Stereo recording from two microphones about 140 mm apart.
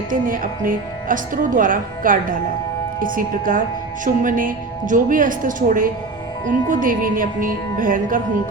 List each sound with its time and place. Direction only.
0.1 s a woman's voice: 75° right (ahead or behind)